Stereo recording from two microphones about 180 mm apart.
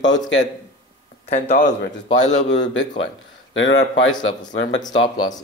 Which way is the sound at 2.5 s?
85° left.